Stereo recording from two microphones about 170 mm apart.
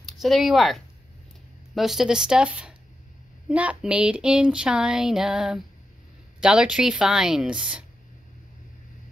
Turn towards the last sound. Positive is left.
turn(degrees=-5)  # may be behind; listen again after turning